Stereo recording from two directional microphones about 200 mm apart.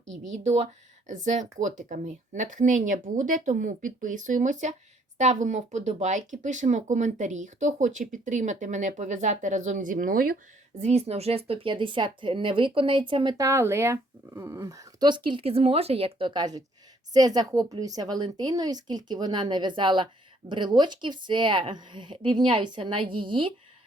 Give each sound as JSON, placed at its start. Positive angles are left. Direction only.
{"t": 0.3, "sound": "speech", "side_deg": -35}
{"t": 10.8, "sound": "speech", "side_deg": -35}